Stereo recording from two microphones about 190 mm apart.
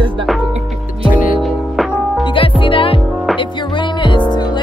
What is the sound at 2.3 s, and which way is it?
Music, 25° left (ahead or behind).